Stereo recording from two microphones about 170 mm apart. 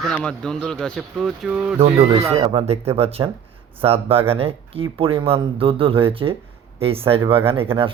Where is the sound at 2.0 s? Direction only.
15° right (ahead or behind).